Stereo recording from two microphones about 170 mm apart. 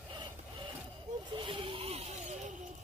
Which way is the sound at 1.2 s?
30° right (ahead or behind).